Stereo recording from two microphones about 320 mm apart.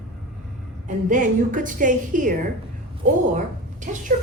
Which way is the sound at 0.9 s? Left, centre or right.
Right.